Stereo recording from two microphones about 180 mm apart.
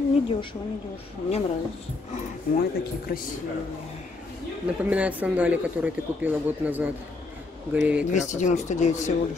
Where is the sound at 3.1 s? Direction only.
55° left (ahead or behind).